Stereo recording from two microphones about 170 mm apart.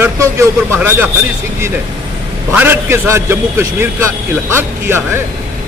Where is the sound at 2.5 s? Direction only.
15° right (ahead or behind).